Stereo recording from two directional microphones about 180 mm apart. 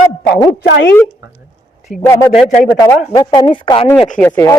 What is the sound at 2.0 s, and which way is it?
A woman's voice, 15° left (ahead or behind).